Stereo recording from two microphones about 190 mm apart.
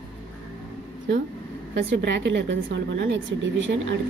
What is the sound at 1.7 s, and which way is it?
A woman's voice, 65° right (ahead or behind).